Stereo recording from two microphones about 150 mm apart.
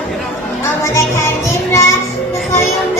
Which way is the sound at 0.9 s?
20° left (ahead or behind).